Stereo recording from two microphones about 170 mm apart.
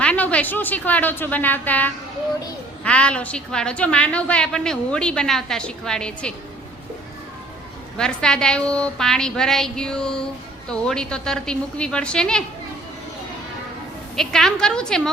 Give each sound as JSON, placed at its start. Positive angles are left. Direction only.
{"t": 0.0, "sound": "a woman's voice", "side_deg": 5}
{"t": 7.9, "sound": "a woman's voice", "side_deg": 5}
{"t": 14.2, "sound": "a woman's voice", "side_deg": 5}